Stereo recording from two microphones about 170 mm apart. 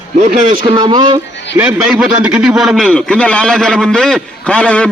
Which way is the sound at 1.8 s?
5° right (ahead or behind).